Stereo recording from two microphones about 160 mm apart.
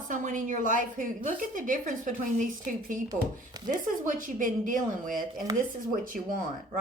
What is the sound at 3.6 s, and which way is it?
A woman's voice, 55° right (ahead or behind).